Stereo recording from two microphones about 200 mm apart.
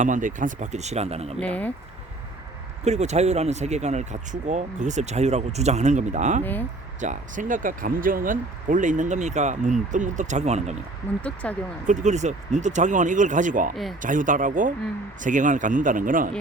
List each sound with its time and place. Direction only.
0.0 s speech: 40° right (ahead or behind)
1.4 s speech: 5° left (ahead or behind)
2.8 s speech: 35° right (ahead or behind)
6.4 s speech: 10° left (ahead or behind)
7.0 s speech: 40° right (ahead or behind)
11.2 s speech: 5° left (ahead or behind)
11.9 s speech: 35° right (ahead or behind)